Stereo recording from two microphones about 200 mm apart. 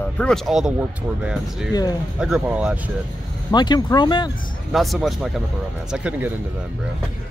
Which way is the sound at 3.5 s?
20° left (ahead or behind).